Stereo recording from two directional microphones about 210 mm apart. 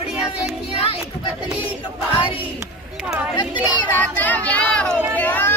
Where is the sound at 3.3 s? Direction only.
20° left (ahead or behind).